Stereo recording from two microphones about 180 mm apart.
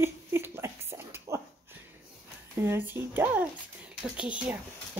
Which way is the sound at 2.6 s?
10° right (ahead or behind).